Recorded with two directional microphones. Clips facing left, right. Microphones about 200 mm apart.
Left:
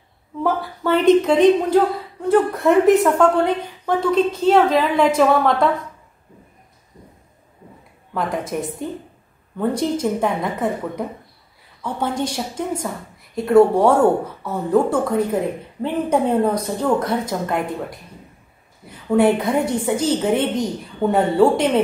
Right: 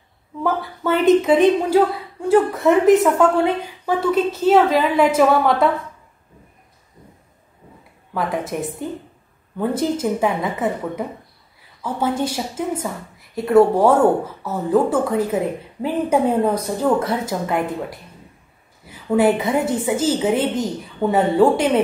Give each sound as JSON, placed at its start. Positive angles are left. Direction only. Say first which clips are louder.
{"t": 0.4, "sound": "a woman's voice", "louder": "left 1 dB", "side_deg": 0}
{"t": 8.1, "sound": "a woman's voice", "louder": "even", "side_deg": 0}